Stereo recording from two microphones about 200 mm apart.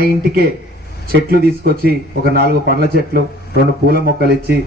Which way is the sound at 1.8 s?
50° right (ahead or behind).